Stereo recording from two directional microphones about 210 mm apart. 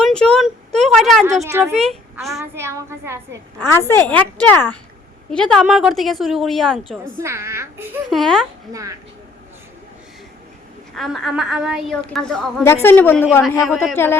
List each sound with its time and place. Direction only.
0.0 s a sound: 5° left (ahead or behind)
1.5 s a woman's voice: 15° right (ahead or behind)
1.7 s a child's voice: centre (ahead or behind)
2.4 s a woman's voice: 15° right (ahead or behind)
3.6 s a woman's voice: 10° left (ahead or behind)
7.2 s a woman's voice: 10° right (ahead or behind)
8.1 s a woman's voice: centre (ahead or behind)
8.7 s a woman's voice: 15° right (ahead or behind)
10.9 s a woman's voice: centre (ahead or behind)